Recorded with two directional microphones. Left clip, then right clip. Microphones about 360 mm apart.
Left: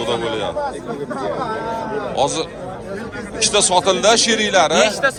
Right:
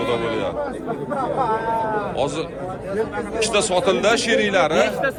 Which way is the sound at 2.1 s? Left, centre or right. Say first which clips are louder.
Left 4 dB; centre.